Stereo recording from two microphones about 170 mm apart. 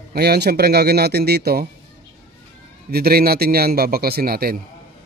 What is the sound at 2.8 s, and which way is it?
A man's voice, 65° right (ahead or behind).